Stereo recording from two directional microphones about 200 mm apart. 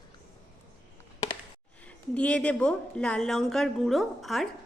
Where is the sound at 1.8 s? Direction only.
5° left (ahead or behind).